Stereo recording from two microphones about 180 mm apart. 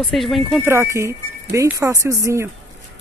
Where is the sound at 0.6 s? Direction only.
15° right (ahead or behind).